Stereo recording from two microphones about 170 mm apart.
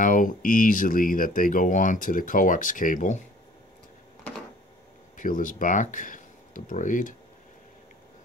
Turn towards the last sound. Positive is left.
turn(degrees=50)  # may be behind; listen again after turning